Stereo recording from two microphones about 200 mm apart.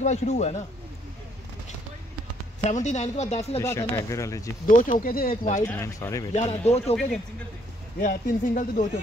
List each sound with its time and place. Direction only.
0.0 s speech: 35° left (ahead or behind)
2.6 s speech: 35° left (ahead or behind)
3.5 s speech: 15° left (ahead or behind)
4.6 s speech: 40° left (ahead or behind)
5.7 s speech: 15° left (ahead or behind)
6.3 s speech: 30° left (ahead or behind)
8.0 s speech: 45° left (ahead or behind)